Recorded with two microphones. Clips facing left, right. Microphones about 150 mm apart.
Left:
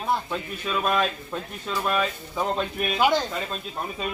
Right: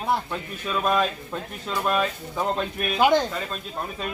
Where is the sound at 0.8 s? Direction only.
Centre (ahead or behind).